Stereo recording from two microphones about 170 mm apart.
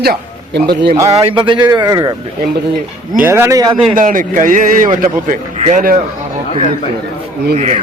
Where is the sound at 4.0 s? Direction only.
50° right (ahead or behind).